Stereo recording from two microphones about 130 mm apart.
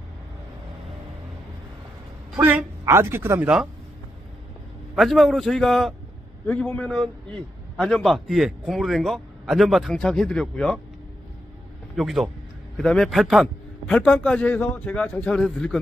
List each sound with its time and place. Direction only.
2.3 s a woman's voice: 10° right (ahead or behind)
4.9 s a man's voice: centre (ahead or behind)
11.9 s a man's voice: centre (ahead or behind)